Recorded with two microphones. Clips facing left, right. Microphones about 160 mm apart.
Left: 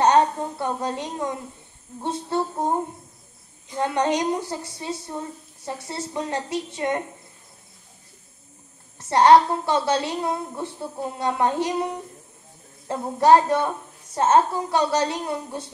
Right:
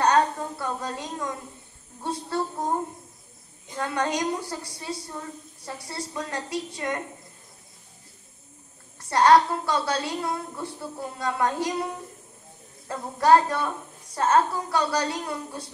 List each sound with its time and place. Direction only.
0.0 s a sound: 20° left (ahead or behind)
2.0 s a woman's voice: 25° left (ahead or behind)
3.7 s a woman's voice: 20° left (ahead or behind)
9.1 s a woman's voice: 25° left (ahead or behind)